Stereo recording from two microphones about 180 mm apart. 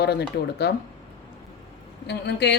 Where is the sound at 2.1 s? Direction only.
70° left (ahead or behind).